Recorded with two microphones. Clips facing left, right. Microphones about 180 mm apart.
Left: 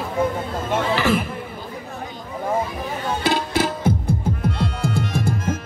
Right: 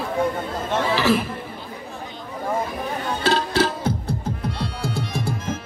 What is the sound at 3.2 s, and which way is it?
Music, 15° left (ahead or behind).